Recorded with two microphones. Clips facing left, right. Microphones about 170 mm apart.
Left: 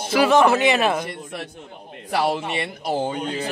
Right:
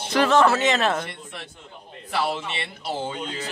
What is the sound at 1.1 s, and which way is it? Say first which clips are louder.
Speech: left 6 dB; 45° left (ahead or behind).